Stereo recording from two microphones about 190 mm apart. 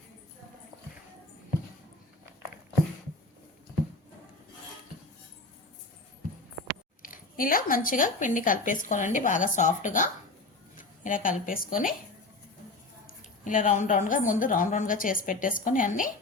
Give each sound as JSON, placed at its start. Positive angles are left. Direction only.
{"t": 7.0, "sound": "speech", "side_deg": 45}
{"t": 13.4, "sound": "speech", "side_deg": 40}